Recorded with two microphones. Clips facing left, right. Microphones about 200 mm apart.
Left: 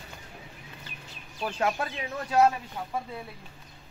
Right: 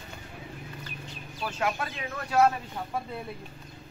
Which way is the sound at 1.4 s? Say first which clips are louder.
Left 2 dB; 35° left (ahead or behind).